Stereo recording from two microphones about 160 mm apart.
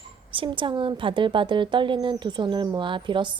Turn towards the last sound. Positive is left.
turn(degrees=-30)  # may be behind; listen again after turning